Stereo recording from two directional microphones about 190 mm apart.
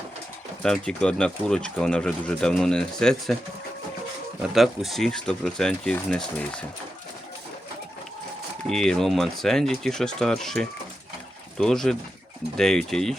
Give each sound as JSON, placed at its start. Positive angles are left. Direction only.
{"t": 0.6, "sound": "speech", "side_deg": 5}
{"t": 4.5, "sound": "speech", "side_deg": 0}
{"t": 8.7, "sound": "speech", "side_deg": 5}